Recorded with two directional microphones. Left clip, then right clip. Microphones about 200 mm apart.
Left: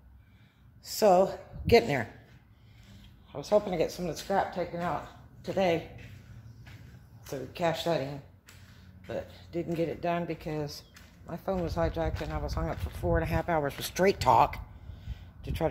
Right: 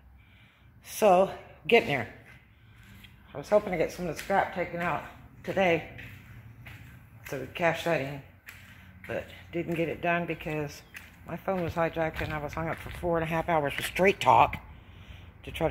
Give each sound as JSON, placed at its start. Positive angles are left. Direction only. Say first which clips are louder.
{"t": 0.9, "sound": "speech", "louder": "right 1 dB", "side_deg": 0}
{"t": 1.7, "sound": "speech", "louder": "even", "side_deg": 10}
{"t": 3.3, "sound": "speech", "louder": "right 1 dB", "side_deg": 0}
{"t": 4.3, "sound": "speech", "louder": "right 2 dB", "side_deg": -25}
{"t": 7.2, "sound": "speech", "louder": "right 3 dB", "side_deg": -15}
{"t": 9.0, "sound": "speech", "louder": "right 2 dB", "side_deg": -15}
{"t": 15.0, "sound": "a sound", "louder": "even", "side_deg": 0}